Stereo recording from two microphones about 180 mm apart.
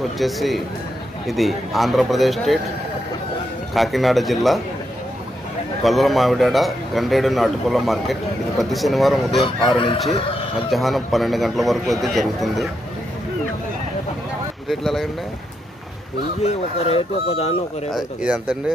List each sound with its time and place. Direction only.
0.2 s speech: centre (ahead or behind)
3.7 s speech: centre (ahead or behind)
5.8 s speech: centre (ahead or behind)
9.8 s speech: 30° left (ahead or behind)
10.7 s speech: centre (ahead or behind)
14.7 s speech: centre (ahead or behind)
16.4 s speech: 35° left (ahead or behind)
17.9 s speech: 5° right (ahead or behind)